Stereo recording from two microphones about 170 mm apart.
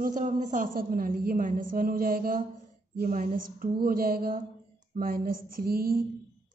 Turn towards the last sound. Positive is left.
turn(degrees=-60)  # may be behind; listen again after turning